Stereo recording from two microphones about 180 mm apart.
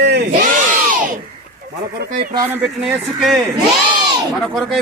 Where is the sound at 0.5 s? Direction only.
50° right (ahead or behind).